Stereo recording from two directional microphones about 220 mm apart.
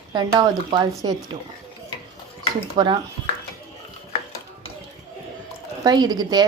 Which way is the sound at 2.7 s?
20° right (ahead or behind).